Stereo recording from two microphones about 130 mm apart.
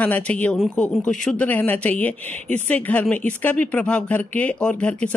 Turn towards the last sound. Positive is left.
turn(degrees=10)  # may be behind; listen again after turning